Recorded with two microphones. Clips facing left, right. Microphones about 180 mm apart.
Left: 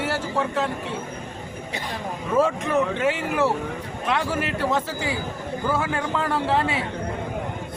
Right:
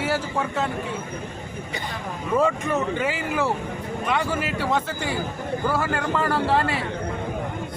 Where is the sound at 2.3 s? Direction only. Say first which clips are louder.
Left 1 dB; centre (ahead or behind).